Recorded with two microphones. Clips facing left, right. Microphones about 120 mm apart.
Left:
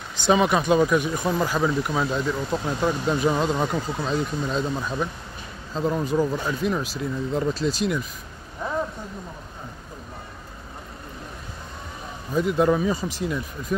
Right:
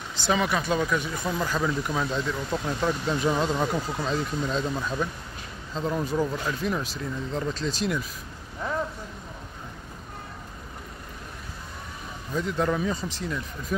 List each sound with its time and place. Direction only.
0.1 s speech: 20° left (ahead or behind); by 8.1 s centre (ahead or behind)
8.6 s a sound: 15° left (ahead or behind)
12.4 s speech: 15° left (ahead or behind)
13.7 s speech: centre (ahead or behind)